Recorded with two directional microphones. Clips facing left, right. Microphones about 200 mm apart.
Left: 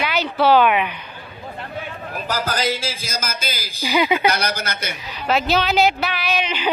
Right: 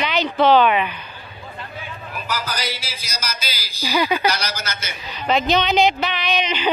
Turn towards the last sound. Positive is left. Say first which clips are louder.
# right 1 dB
turn(degrees=5)  # may be behind; listen again after turning